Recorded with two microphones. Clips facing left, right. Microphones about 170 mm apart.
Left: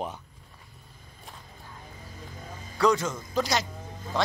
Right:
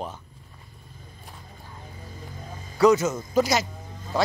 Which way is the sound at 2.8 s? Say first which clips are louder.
Right 5 dB; 5° right (ahead or behind).